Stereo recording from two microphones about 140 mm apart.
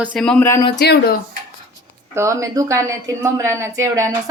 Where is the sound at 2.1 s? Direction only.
20° right (ahead or behind).